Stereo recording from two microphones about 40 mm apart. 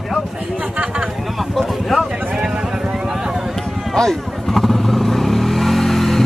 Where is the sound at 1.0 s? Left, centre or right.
Centre.